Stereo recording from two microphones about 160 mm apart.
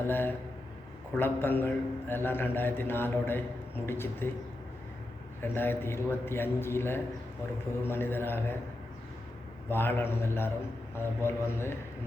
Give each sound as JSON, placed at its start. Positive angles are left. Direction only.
{"t": 0.0, "sound": "a man's voice", "side_deg": 10}
{"t": 5.4, "sound": "a man's voice", "side_deg": 15}
{"t": 9.6, "sound": "a man's voice", "side_deg": 15}